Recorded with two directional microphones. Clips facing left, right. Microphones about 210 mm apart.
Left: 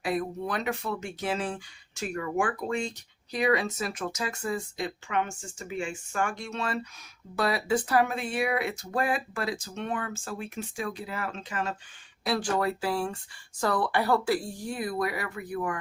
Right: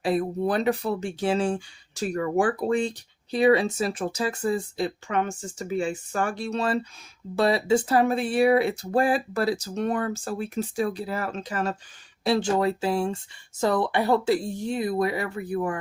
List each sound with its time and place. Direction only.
0.0 s speech: 30° right (ahead or behind)
12.2 s speech: 25° right (ahead or behind)